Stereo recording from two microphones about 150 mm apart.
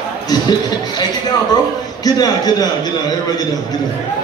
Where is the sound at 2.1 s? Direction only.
25° left (ahead or behind).